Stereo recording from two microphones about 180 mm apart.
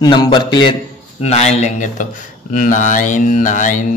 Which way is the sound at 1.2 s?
35° left (ahead or behind).